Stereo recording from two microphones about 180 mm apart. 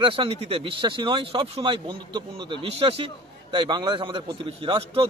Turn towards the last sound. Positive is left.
turn(degrees=-30)  # may be behind; listen again after turning